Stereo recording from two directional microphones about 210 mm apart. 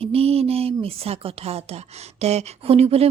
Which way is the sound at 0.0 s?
30° right (ahead or behind).